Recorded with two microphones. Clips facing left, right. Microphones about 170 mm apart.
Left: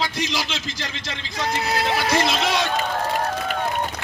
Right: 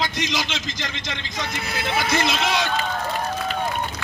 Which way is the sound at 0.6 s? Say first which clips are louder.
Right 1 dB; 30° left (ahead or behind).